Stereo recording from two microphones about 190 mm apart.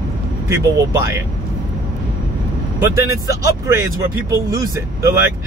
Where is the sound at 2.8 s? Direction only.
15° right (ahead or behind).